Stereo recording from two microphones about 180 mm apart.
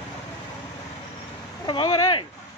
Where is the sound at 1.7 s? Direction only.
25° left (ahead or behind).